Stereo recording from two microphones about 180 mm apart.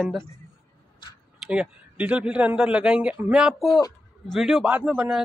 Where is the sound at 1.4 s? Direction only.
5° right (ahead or behind).